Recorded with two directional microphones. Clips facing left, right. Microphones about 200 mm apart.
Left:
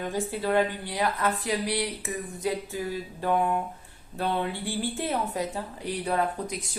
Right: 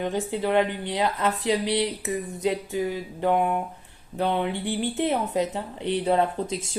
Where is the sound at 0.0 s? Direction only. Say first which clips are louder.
Right 3 dB; 20° right (ahead or behind).